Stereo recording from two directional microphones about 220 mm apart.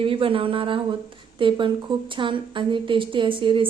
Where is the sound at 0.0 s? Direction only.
25° right (ahead or behind).